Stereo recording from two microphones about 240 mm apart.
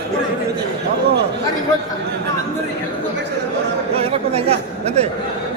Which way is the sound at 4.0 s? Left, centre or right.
Right.